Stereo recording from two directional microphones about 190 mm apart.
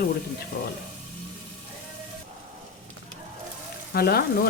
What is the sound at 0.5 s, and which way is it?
Speech, 50° left (ahead or behind).